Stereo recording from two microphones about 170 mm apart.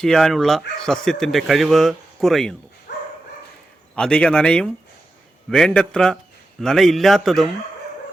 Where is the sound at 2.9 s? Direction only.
80° left.